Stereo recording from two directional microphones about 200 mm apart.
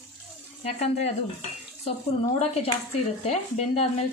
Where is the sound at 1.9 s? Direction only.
30° left (ahead or behind).